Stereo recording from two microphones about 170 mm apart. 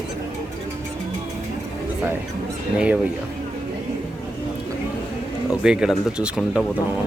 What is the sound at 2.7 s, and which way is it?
Speech, 5° right (ahead or behind).